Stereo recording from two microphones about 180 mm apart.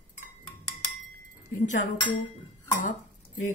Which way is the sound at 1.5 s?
45° left (ahead or behind).